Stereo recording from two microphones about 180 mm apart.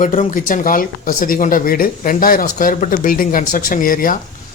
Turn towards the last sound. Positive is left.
turn(degrees=50)  # may be behind; listen again after turning